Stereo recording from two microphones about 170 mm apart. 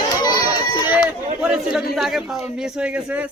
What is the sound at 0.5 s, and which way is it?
Run, 25° left (ahead or behind).